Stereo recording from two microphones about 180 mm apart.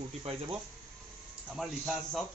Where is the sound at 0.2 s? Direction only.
35° right (ahead or behind).